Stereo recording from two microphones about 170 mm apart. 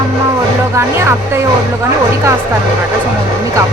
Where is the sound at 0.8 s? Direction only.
15° right (ahead or behind).